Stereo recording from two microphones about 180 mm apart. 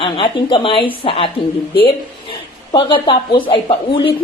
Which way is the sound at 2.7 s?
30° left (ahead or behind).